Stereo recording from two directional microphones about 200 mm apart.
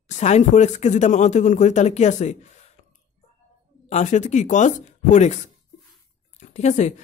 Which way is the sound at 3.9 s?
35° left (ahead or behind).